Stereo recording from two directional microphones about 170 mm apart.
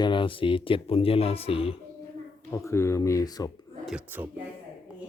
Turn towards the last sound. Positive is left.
turn(degrees=-10)  # may be behind; listen again after turning